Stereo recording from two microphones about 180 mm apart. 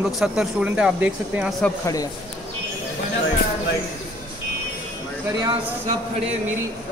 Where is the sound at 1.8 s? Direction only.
20° left (ahead or behind).